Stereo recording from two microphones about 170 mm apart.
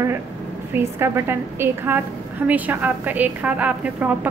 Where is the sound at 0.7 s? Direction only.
15° right (ahead or behind).